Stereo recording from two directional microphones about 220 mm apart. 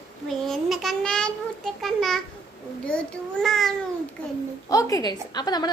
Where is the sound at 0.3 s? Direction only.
Centre (ahead or behind).